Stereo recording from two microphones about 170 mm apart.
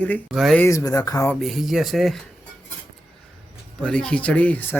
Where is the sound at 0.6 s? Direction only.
20° left (ahead or behind).